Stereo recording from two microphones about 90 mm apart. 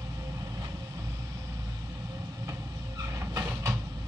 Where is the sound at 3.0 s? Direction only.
35° right (ahead or behind).